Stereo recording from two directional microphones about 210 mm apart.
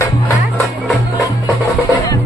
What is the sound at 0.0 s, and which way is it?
Music, 15° left (ahead or behind).